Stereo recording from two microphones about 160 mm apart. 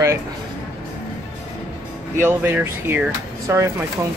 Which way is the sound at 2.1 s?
15° right (ahead or behind).